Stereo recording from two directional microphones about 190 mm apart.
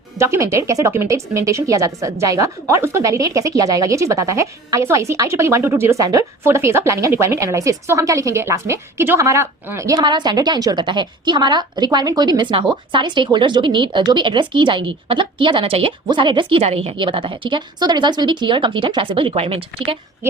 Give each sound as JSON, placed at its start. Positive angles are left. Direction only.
{"t": 0.2, "sound": "speech", "side_deg": -15}